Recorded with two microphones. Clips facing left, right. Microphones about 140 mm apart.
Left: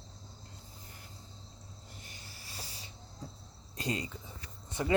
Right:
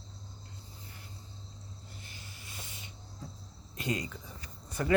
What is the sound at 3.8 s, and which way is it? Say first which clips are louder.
Speech: right 1 dB; 30° left (ahead or behind).